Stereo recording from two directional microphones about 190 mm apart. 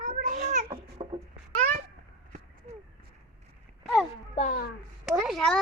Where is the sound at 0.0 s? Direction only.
40° right (ahead or behind).